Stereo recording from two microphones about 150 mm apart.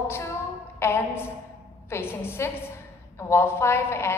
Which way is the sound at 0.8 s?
15° left (ahead or behind).